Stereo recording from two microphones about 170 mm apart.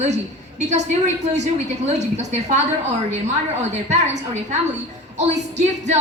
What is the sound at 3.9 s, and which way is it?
A woman's voice, 45° right (ahead or behind).